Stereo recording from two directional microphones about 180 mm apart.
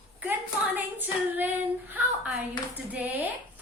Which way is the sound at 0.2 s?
10° right (ahead or behind).